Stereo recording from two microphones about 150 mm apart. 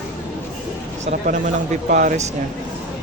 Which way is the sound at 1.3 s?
55° right (ahead or behind).